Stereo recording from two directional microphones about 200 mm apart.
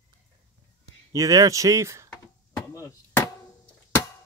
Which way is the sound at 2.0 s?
15° left (ahead or behind).